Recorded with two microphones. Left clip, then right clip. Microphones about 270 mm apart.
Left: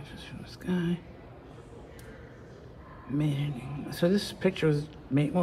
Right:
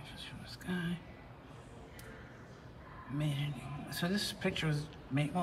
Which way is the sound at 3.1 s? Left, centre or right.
Centre.